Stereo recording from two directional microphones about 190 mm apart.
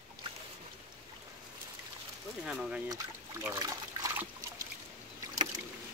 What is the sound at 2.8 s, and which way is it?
Speech, 20° right (ahead or behind).